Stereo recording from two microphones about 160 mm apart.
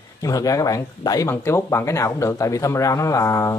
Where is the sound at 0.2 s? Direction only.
20° left (ahead or behind).